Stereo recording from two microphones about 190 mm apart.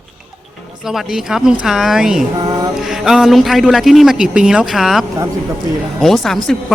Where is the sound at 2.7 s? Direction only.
Centre (ahead or behind).